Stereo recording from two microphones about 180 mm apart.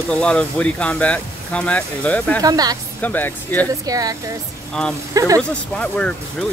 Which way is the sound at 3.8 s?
20° right (ahead or behind).